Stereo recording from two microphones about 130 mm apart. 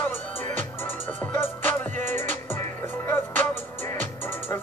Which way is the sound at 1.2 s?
15° left (ahead or behind).